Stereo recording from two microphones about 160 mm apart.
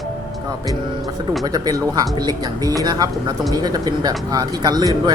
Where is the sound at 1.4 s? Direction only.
25° right (ahead or behind).